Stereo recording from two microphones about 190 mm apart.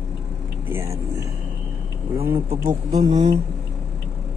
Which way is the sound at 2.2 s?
10° right (ahead or behind).